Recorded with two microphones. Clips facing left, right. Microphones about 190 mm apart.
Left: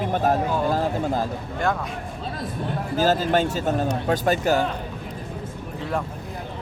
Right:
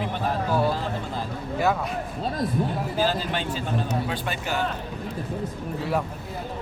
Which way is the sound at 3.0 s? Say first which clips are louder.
Left 7 dB; 45° left (ahead or behind).